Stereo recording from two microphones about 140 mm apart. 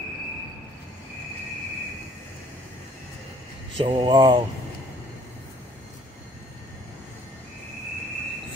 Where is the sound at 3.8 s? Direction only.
35° right (ahead or behind).